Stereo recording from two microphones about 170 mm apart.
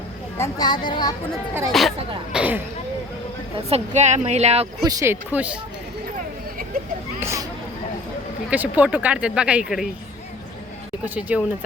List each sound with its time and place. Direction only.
0.3 s speech: 20° left (ahead or behind)
1.7 s speech: centre (ahead or behind)
3.7 s speech: 40° right (ahead or behind)
4.8 s speech: 20° right (ahead or behind)
7.2 s speech: 15° right (ahead or behind)
8.4 s speech: 10° right (ahead or behind)
11.0 s speech: 10° right (ahead or behind)